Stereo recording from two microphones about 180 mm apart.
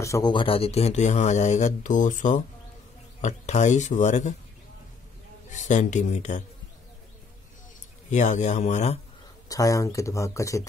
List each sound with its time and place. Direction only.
0.0 s speech: 20° left (ahead or behind); by 4.4 s 40° left (ahead or behind)
5.5 s speech: 40° left (ahead or behind)
8.1 s speech: 40° left (ahead or behind)
9.5 s speech: 20° left (ahead or behind)